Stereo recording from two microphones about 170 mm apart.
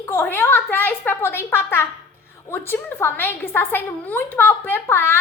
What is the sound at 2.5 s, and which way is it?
A woman's voice, 15° left (ahead or behind).